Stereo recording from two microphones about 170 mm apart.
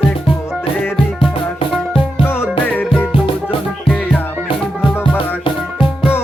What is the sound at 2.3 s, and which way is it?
Music, 10° left (ahead or behind).